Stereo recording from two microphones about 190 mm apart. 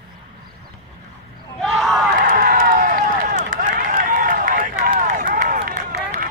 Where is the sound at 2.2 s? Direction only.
45° right (ahead or behind).